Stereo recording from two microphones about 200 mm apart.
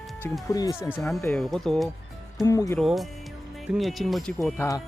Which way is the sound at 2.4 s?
15° left (ahead or behind).